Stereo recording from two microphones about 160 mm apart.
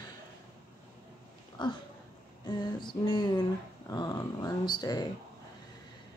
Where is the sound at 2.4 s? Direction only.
25° left (ahead or behind).